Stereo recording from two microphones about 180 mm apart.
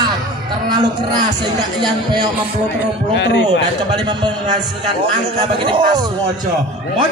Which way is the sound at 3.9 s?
25° right (ahead or behind).